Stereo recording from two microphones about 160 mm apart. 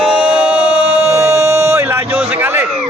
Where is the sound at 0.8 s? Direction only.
40° right (ahead or behind).